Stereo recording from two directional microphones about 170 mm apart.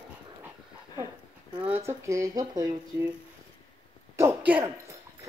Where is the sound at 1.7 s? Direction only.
15° right (ahead or behind).